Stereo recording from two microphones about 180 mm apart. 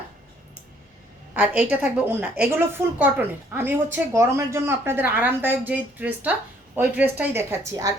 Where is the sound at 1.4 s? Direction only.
10° right (ahead or behind).